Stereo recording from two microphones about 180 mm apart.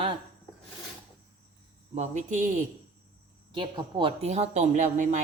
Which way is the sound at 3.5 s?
30° right (ahead or behind).